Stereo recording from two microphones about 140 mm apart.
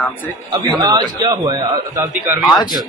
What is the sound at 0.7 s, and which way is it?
A man's voice, 30° right (ahead or behind).